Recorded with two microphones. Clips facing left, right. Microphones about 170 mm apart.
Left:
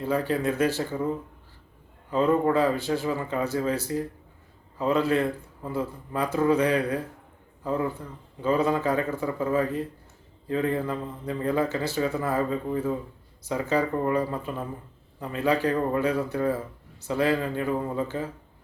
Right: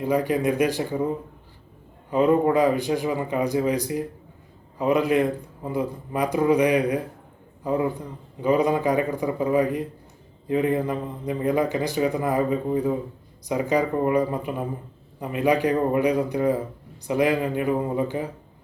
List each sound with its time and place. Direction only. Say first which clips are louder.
0.0 s a man's voice: right 3 dB; 15° right (ahead or behind)